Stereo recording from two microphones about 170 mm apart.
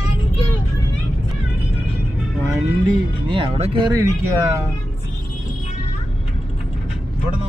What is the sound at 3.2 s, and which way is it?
Speech, 30° right (ahead or behind).